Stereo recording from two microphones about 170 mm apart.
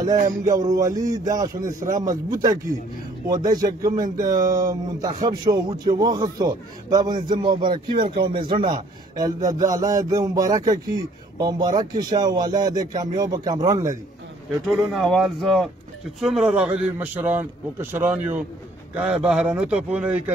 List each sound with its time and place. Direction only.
0.1 s a sound: 50° right (ahead or behind)
0.5 s a man's voice: 20° right (ahead or behind)
14.7 s a man's voice: centre (ahead or behind)